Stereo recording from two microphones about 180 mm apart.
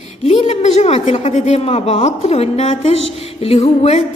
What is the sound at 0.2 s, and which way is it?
A woman's voice, 30° left (ahead or behind).